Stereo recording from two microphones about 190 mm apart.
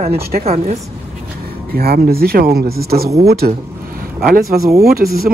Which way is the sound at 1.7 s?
55° right (ahead or behind).